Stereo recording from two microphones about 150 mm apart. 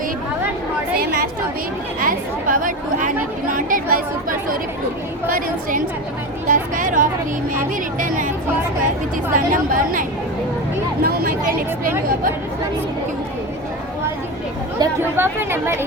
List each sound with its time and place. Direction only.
2.0 s a woman's voice: 65° right (ahead or behind)
6.5 s speech: 60° right (ahead or behind)
9.3 s speech: 65° right (ahead or behind)
11.0 s speech: 85° right
14.8 s speech: 15° right (ahead or behind)